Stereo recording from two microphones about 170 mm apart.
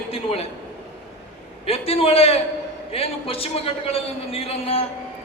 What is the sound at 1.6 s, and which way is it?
A man's voice, 35° left (ahead or behind).